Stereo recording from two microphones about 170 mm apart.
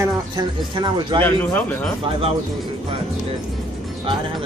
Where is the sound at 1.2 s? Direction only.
10° left (ahead or behind).